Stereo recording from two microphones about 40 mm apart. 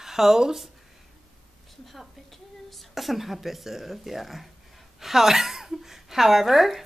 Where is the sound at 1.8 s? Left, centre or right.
Centre.